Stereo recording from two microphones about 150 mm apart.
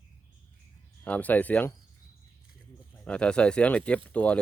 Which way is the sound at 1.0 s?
10° left (ahead or behind).